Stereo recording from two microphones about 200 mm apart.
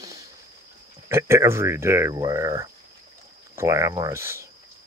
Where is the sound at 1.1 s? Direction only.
15° right (ahead or behind).